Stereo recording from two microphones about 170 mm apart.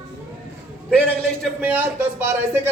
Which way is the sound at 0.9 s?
5° left (ahead or behind).